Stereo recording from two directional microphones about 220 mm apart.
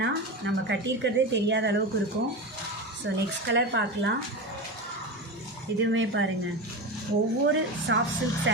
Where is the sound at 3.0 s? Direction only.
55° right (ahead or behind).